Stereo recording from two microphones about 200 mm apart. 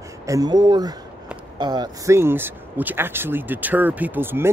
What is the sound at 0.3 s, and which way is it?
Speech, 20° right (ahead or behind).